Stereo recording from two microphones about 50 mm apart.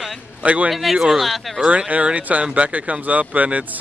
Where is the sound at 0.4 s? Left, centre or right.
Right.